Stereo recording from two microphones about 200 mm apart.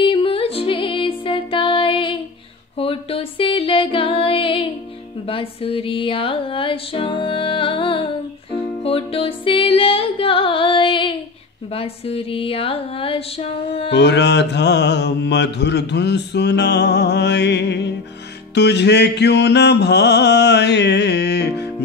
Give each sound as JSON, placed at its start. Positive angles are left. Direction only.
{"t": 0.0, "sound": "music", "side_deg": 25}
{"t": 13.9, "sound": "mantra", "side_deg": 60}